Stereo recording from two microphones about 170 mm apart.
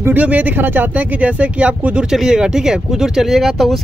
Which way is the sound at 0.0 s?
10° right (ahead or behind).